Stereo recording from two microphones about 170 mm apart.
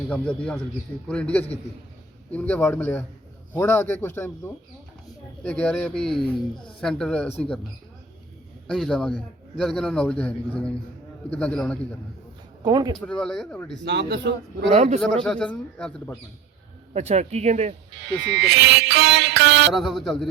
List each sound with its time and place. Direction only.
0.1 s a man's voice: 5° left (ahead or behind)
8.6 s a man's voice: 5° left (ahead or behind)
12.6 s speech: 25° right (ahead or behind)
13.1 s a man's voice: 5° left (ahead or behind)
13.8 s a man's voice: 85° right
14.7 s a man's voice: 45° right (ahead or behind)
15.0 s a man's voice: 5° left (ahead or behind)
16.9 s speech: 40° right (ahead or behind)
18.2 s music: 90° right
19.7 s a man's voice: centre (ahead or behind)